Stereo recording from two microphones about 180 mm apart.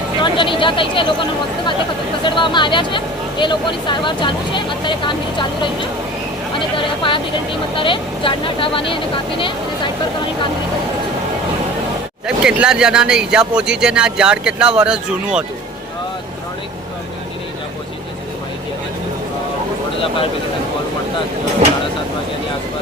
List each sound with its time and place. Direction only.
0.2 s speech: 25° left (ahead or behind)
6.7 s speech: 30° left (ahead or behind)
12.4 s speech: 5° right (ahead or behind)